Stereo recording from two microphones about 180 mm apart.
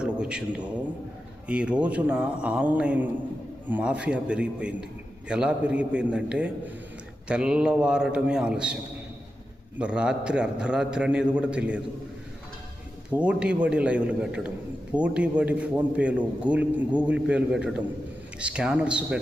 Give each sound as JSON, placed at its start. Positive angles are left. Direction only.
{"t": 0.0, "sound": "a sound", "side_deg": -5}
{"t": 1.5, "sound": "a man's voice", "side_deg": -5}
{"t": 13.1, "sound": "a man's voice", "side_deg": -5}